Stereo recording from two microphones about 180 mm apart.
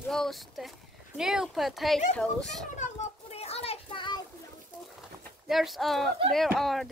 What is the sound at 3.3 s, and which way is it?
Child singing, 35° left (ahead or behind).